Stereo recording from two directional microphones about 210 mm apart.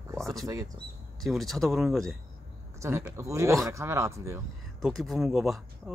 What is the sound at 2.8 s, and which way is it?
Speech, 15° right (ahead or behind).